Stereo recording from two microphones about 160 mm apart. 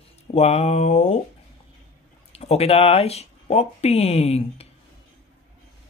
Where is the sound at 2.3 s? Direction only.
40° left (ahead or behind).